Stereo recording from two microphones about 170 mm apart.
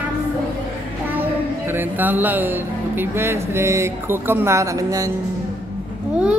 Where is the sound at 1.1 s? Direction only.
10° right (ahead or behind).